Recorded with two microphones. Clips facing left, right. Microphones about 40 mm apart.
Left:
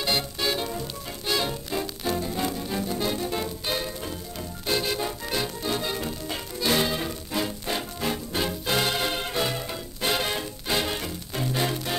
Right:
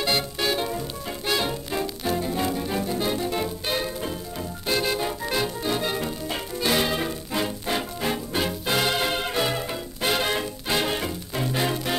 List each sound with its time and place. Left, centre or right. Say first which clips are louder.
0.0 s music: right 2 dB; centre